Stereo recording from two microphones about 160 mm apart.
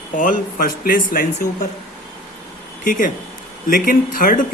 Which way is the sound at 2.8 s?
55° left (ahead or behind).